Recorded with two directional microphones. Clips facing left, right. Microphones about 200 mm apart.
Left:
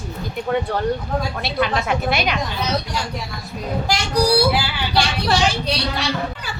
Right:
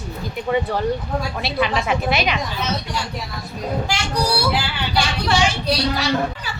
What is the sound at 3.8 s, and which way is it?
Speech, 40° left (ahead or behind).